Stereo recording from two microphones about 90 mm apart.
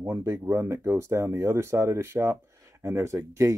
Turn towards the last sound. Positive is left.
turn(degrees=-35)  # may be behind; listen again after turning